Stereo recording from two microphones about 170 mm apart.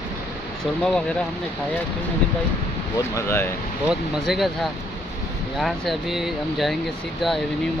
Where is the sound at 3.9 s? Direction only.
Centre (ahead or behind).